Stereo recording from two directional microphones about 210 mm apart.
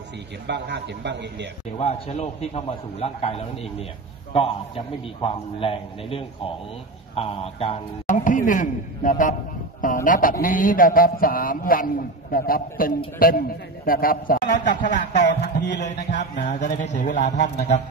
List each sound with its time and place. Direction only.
0.5 s a man's voice: 55° right (ahead or behind)
1.8 s a man's voice: 30° left (ahead or behind)
15.2 s speech: 55° left (ahead or behind)
15.8 s a man's voice: 35° left (ahead or behind)